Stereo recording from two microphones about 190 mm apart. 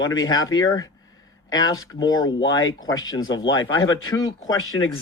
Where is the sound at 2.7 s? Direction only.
90° left.